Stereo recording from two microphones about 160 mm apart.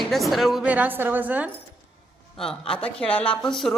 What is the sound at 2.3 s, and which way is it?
A woman's voice, 5° left (ahead or behind).